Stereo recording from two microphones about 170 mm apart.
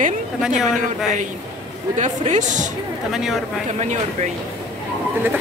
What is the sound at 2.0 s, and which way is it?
Speech, 45° right (ahead or behind).